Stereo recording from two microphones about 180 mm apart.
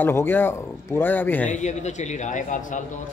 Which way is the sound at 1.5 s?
40° left (ahead or behind).